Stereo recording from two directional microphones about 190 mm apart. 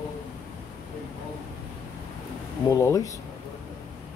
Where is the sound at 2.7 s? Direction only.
15° left (ahead or behind).